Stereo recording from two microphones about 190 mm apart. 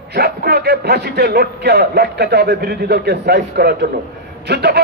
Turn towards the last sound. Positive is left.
turn(degrees=-60)  # may be behind; listen again after turning